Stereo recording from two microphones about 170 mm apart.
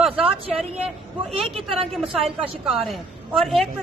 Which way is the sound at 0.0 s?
5° right (ahead or behind).